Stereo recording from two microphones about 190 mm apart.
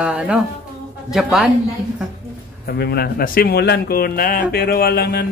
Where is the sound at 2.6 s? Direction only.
55° left (ahead or behind).